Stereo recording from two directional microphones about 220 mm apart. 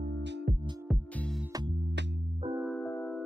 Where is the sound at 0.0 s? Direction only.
45° right (ahead or behind).